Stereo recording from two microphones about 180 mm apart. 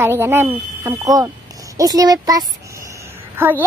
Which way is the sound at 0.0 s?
15° right (ahead or behind).